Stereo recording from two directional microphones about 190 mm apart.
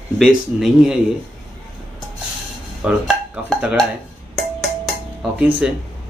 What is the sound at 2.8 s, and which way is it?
Speech, 5° right (ahead or behind).